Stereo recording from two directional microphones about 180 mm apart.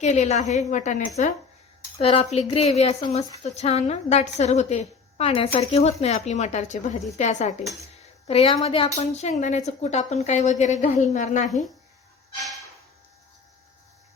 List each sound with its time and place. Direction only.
0.0 s a woman's voice: 40° left (ahead or behind)